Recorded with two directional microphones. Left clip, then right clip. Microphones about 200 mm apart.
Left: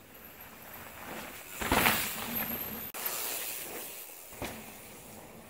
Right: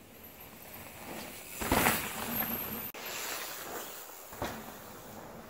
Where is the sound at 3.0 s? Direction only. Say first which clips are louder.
Even; 35° left (ahead or behind).